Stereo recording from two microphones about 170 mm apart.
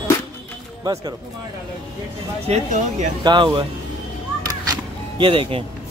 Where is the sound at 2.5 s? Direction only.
45° right (ahead or behind).